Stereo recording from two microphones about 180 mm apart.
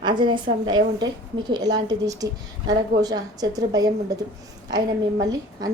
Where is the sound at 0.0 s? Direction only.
25° right (ahead or behind).